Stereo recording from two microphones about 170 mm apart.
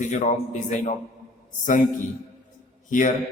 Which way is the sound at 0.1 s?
45° left (ahead or behind).